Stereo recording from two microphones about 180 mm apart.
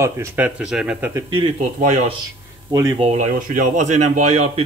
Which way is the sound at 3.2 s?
50° right (ahead or behind).